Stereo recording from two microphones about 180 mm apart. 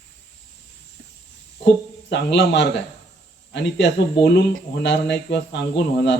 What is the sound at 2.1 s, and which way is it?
Speech, 75° left (ahead or behind).